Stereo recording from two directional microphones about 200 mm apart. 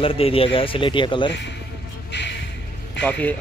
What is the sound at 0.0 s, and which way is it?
Speech, 30° left (ahead or behind).